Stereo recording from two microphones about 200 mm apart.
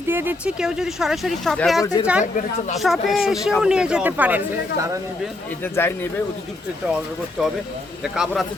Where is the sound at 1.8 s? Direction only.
15° left (ahead or behind).